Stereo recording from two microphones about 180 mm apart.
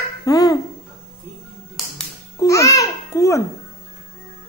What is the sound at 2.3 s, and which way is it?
Babbling, 15° left (ahead or behind).